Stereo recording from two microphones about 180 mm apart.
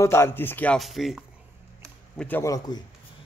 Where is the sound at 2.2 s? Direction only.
15° left (ahead or behind).